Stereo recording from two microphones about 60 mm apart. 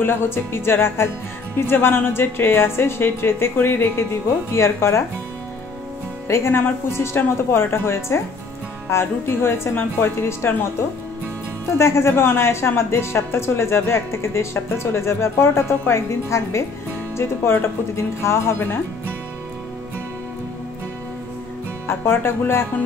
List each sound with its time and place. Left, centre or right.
0.0 s a woman's voice: left
6.2 s a woman's voice: left
11.6 s speech: left
17.2 s speech: left
21.8 s speech: left